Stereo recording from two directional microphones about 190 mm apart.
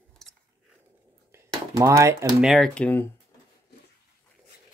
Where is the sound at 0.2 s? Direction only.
Centre (ahead or behind).